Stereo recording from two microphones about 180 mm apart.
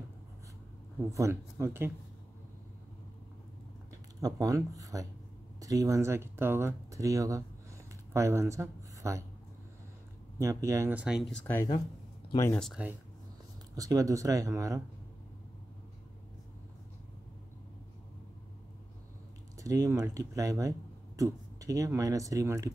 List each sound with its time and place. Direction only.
1.1 s speech: 15° right (ahead or behind)
4.2 s speech: 20° right (ahead or behind)
10.4 s speech: 15° right (ahead or behind); by 11.6 s 5° left (ahead or behind)
12.3 s speech: 20° left (ahead or behind)
12.5 s speech: centre (ahead or behind)
13.7 s speech: 20° right (ahead or behind)
19.5 s speech: 20° right (ahead or behind)